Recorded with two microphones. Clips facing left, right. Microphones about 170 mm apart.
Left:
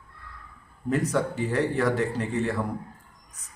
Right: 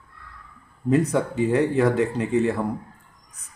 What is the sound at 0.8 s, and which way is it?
Speech, 20° right (ahead or behind).